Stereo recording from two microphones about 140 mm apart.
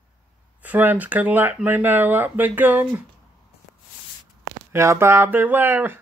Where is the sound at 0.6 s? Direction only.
10° right (ahead or behind).